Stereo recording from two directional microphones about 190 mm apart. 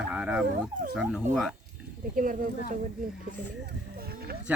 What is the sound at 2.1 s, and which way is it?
Speech, 45° right (ahead or behind).